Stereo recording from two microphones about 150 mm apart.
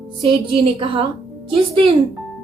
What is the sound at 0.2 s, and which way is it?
A woman's voice, 40° right (ahead or behind).